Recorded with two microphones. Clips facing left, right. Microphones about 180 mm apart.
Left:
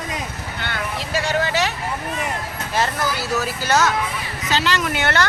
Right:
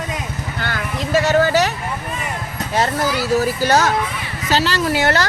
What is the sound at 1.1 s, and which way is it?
Speech, 40° right (ahead or behind).